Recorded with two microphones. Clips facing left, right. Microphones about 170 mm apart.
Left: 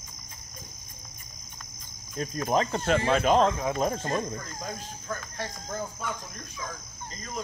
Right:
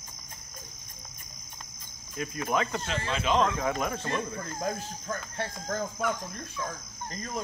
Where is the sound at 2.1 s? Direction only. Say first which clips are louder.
Left 3 dB; 40° left (ahead or behind).